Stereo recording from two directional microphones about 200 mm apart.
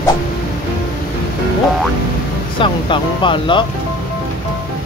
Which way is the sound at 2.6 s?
25° left (ahead or behind).